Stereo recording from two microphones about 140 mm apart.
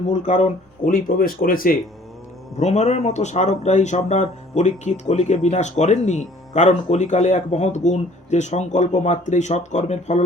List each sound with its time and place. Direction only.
0.1 s speech: 60° left (ahead or behind); by 1.8 s 90° left
2.6 s speech: 55° left (ahead or behind)